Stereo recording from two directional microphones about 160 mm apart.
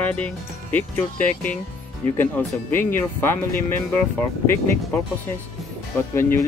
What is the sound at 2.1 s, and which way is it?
Speech, 10° left (ahead or behind).